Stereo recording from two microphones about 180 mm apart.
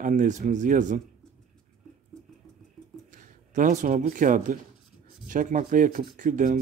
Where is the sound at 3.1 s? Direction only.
45° right (ahead or behind).